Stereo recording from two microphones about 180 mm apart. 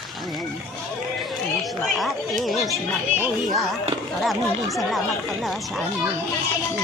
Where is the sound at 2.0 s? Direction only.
Centre (ahead or behind).